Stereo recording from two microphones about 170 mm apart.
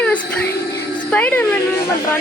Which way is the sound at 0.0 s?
10° left (ahead or behind).